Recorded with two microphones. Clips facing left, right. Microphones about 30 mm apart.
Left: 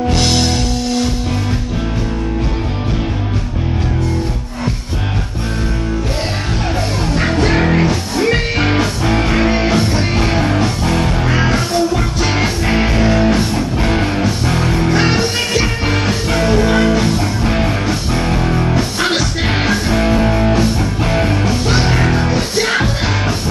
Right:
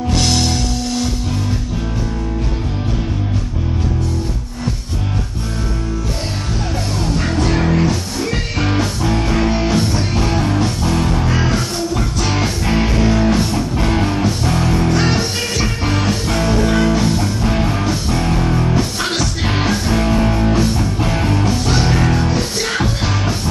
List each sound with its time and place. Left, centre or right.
0.1 s music: centre
7.2 s music: left